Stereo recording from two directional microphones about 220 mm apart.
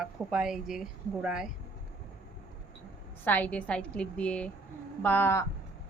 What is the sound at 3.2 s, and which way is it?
Speech, 5° left (ahead or behind).